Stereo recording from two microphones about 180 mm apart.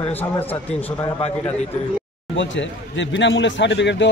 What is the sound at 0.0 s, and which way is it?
Speech, 10° left (ahead or behind).